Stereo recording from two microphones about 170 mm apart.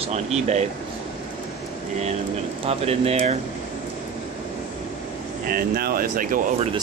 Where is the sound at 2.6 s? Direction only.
35° right (ahead or behind).